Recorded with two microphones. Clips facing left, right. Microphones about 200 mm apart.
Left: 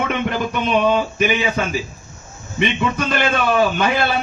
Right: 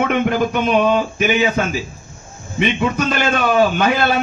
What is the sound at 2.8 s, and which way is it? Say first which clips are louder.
Speech: right 1 dB; 50° right (ahead or behind).